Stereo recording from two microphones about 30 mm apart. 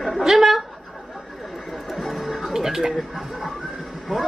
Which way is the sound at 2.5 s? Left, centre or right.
Centre.